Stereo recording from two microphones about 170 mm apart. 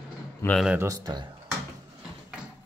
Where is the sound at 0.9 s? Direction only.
25° right (ahead or behind).